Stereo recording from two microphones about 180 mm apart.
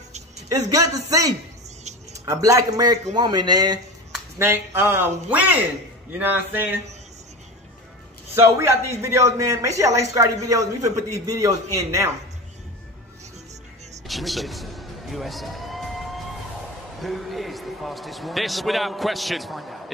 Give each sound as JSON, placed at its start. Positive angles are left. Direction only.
{"t": 0.5, "sound": "a man's voice", "side_deg": -20}
{"t": 8.4, "sound": "a man's voice", "side_deg": -15}
{"t": 14.0, "sound": "a sound", "side_deg": 0}
{"t": 17.0, "sound": "speech", "side_deg": 0}